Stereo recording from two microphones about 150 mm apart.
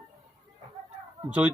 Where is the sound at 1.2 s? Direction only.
10° right (ahead or behind).